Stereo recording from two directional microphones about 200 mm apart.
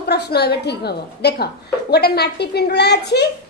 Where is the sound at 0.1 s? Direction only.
55° left (ahead or behind).